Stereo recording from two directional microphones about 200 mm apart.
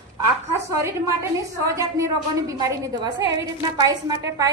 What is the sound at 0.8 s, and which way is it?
A woman's voice, 15° right (ahead or behind).